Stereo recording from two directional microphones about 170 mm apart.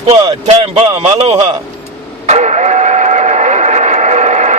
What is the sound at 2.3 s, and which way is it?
Vehicle, 40° right (ahead or behind).